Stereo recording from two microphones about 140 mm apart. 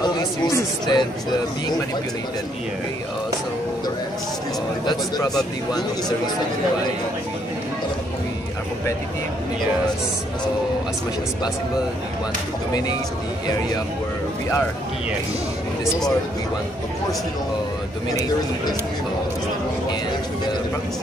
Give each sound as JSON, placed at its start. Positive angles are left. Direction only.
{"t": 0.0, "sound": "speech", "side_deg": 25}
{"t": 4.8, "sound": "speech", "side_deg": 30}
{"t": 5.3, "sound": "speech", "side_deg": 0}